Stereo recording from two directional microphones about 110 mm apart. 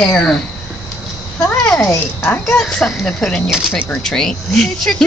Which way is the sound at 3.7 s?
15° left (ahead or behind).